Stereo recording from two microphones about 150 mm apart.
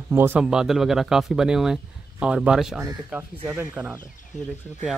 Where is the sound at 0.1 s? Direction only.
15° right (ahead or behind).